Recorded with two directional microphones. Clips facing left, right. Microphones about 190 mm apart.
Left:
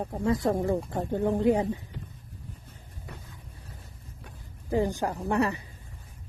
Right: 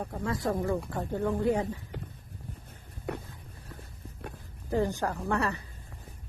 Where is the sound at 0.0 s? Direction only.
25° left (ahead or behind).